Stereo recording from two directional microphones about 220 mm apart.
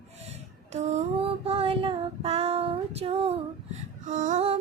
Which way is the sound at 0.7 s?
30° right (ahead or behind).